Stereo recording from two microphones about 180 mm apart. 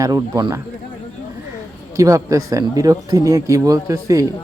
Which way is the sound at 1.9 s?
20° right (ahead or behind).